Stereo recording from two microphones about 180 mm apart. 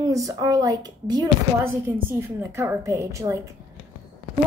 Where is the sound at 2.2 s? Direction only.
15° right (ahead or behind).